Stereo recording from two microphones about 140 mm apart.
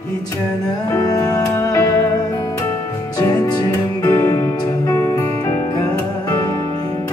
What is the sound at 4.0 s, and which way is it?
Music, 15° left (ahead or behind).